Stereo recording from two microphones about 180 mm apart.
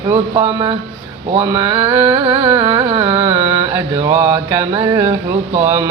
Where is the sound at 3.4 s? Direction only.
15° right (ahead or behind).